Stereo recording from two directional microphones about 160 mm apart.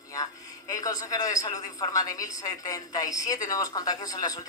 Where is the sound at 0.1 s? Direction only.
20° left (ahead or behind).